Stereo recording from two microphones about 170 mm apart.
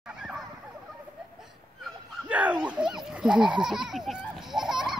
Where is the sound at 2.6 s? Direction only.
5° right (ahead or behind).